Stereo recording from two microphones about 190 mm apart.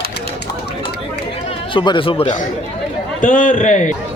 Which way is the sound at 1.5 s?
25° left (ahead or behind).